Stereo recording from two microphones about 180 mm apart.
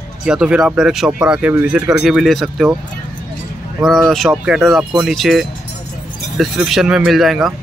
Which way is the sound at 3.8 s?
Centre (ahead or behind).